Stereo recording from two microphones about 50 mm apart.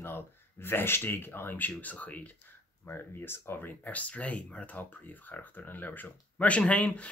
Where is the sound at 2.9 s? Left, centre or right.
Left.